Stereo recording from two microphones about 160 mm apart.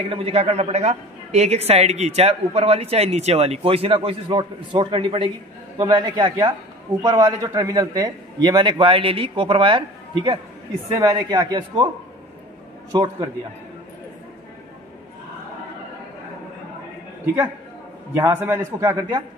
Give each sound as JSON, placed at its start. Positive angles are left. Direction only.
{"t": 0.1, "sound": "a woman's voice", "side_deg": -35}
{"t": 12.9, "sound": "a man's voice", "side_deg": -25}
{"t": 18.3, "sound": "a man's voice", "side_deg": -15}